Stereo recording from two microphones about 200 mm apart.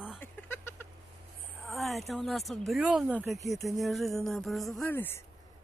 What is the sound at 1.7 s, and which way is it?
Speech, centre (ahead or behind).